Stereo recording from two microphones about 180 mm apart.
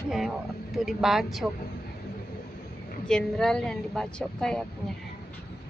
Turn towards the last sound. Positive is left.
turn(degrees=5)  # may be behind; listen again after turning